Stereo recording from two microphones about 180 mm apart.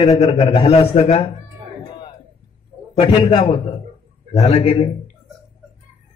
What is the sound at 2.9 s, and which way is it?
A man's voice, 30° left (ahead or behind).